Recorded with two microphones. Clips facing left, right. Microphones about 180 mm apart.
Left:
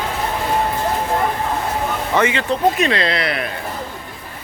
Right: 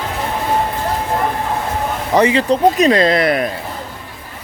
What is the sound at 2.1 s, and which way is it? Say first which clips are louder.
Speech: right 6 dB; 35° right (ahead or behind).